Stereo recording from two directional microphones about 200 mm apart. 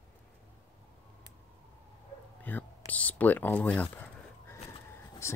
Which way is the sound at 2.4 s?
10° left (ahead or behind).